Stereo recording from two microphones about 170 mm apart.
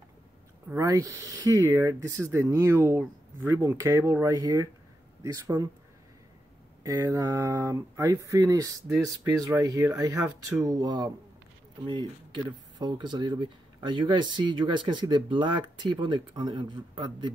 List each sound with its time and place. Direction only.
0.7 s speech: 20° right (ahead or behind)
6.8 s speech: 20° right (ahead or behind)